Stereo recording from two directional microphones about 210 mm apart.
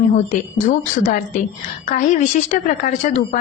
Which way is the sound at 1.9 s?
40° left (ahead or behind).